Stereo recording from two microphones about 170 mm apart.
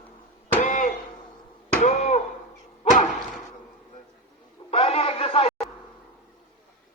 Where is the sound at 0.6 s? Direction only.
50° left (ahead or behind).